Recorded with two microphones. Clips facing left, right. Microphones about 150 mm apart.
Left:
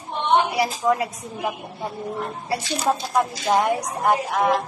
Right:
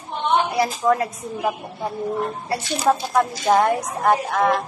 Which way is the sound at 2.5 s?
15° left (ahead or behind).